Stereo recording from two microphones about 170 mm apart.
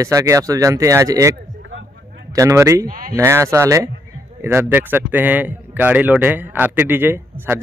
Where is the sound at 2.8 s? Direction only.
55° right (ahead or behind).